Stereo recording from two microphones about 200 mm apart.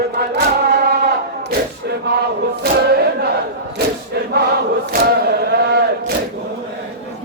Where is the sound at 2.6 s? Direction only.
50° right (ahead or behind).